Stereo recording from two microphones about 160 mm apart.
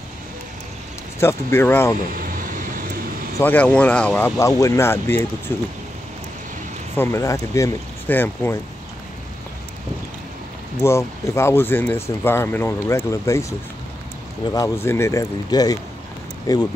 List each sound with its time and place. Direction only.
1.2 s speech: 15° left (ahead or behind)
2.1 s vehicle: 60° right (ahead or behind)
3.3 s speech: 10° left (ahead or behind)
4.4 s speech: 20° left (ahead or behind)
7.0 s speech: 15° left (ahead or behind)
10.8 s speech: 15° left (ahead or behind)
14.5 s speech: 20° left (ahead or behind)